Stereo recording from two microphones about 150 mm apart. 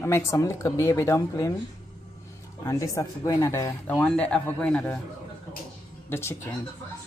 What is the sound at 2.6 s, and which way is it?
Speech, 20° left (ahead or behind).